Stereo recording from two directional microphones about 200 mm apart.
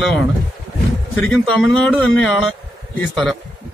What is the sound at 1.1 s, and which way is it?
A man's voice, 5° left (ahead or behind).